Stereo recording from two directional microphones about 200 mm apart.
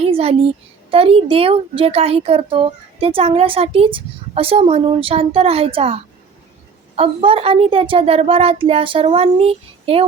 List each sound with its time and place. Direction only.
0.0 s a child's voice: 30° right (ahead or behind)